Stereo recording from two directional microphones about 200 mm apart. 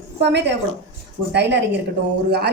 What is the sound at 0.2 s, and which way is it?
A woman's voice, 60° right (ahead or behind).